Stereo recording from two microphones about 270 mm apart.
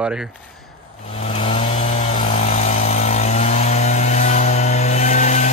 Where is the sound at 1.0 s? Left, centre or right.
Left.